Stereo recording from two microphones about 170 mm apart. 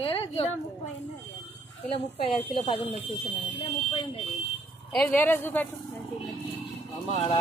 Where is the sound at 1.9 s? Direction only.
35° left (ahead or behind).